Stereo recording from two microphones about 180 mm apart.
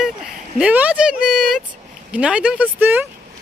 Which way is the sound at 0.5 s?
5° right (ahead or behind).